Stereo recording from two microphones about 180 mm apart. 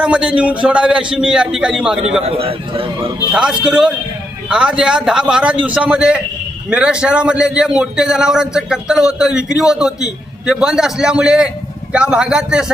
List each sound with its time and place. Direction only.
0.0 s a man's voice: 5° right (ahead or behind)
2.2 s a man's voice: 30° right (ahead or behind)
3.3 s a man's voice: 5° right (ahead or behind)